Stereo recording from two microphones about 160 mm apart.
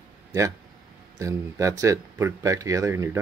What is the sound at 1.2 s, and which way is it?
Speech, 20° right (ahead or behind).